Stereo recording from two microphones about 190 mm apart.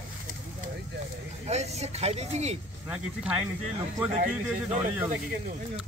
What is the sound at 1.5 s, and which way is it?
Speech, 35° right (ahead or behind).